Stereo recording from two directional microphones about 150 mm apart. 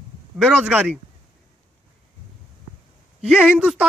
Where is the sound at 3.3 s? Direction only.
5° right (ahead or behind).